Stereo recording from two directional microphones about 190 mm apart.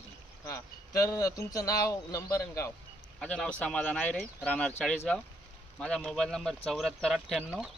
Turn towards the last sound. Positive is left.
turn(degrees=0)  # may be behind; listen again after turning